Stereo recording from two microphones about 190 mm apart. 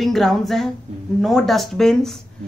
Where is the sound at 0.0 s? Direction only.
Centre (ahead or behind).